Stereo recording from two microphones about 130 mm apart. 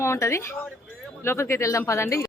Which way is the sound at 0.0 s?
20° left (ahead or behind).